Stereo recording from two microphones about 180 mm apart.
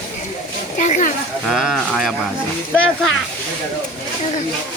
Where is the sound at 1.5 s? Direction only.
Centre (ahead or behind).